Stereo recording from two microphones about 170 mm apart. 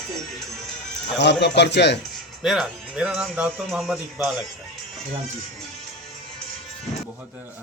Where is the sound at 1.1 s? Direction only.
90° left.